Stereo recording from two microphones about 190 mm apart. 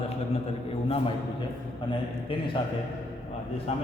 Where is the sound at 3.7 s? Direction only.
35° left (ahead or behind).